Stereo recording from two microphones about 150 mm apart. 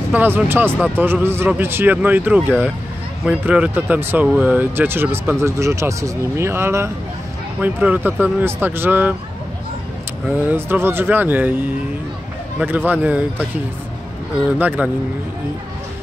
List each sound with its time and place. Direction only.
0.1 s speech: 10° right (ahead or behind)
10.2 s speech: 15° right (ahead or behind)
12.5 s speech: 10° right (ahead or behind)
14.3 s speech: 10° right (ahead or behind)